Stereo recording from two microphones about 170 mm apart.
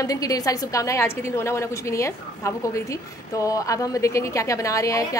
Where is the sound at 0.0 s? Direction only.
20° left (ahead or behind).